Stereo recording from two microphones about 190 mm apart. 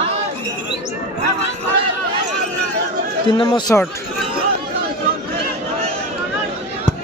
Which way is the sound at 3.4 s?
20° left (ahead or behind).